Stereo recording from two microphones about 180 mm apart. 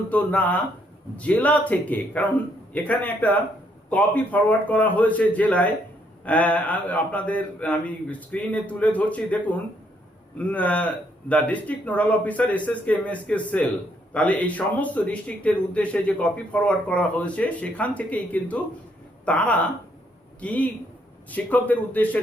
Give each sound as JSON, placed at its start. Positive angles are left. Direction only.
{"t": 0.1, "sound": "speech", "side_deg": 10}